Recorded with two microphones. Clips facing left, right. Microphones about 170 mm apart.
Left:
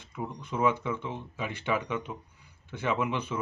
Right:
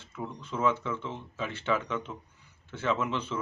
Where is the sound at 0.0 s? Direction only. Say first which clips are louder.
Left 1 dB; 15° left (ahead or behind).